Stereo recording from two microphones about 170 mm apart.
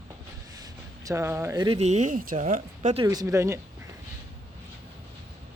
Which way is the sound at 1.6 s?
40° right (ahead or behind).